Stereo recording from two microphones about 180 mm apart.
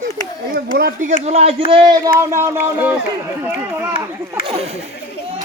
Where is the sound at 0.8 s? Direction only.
50° right (ahead or behind).